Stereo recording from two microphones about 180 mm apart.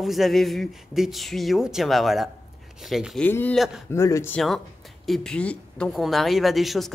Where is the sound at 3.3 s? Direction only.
10° left (ahead or behind).